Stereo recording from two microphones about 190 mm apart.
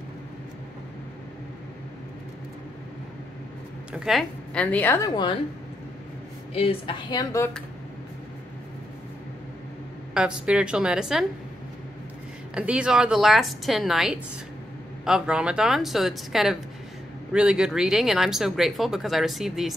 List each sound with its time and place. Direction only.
3.9 s a woman's voice: centre (ahead or behind); by 5.3 s 20° left (ahead or behind)
6.5 s speech: 30° left (ahead or behind)
10.1 s speech: 5° right (ahead or behind)
12.5 s speech: 5° right (ahead or behind)